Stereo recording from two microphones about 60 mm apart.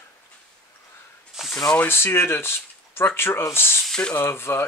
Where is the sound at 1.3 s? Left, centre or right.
Centre.